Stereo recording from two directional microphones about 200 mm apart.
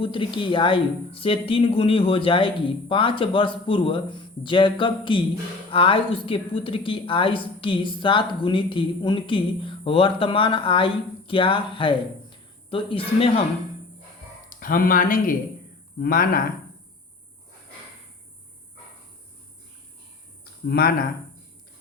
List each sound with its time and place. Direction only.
0.0 s speech: 25° left (ahead or behind)
14.6 s speech: 45° left (ahead or behind)
20.4 s a sound: 50° left (ahead or behind)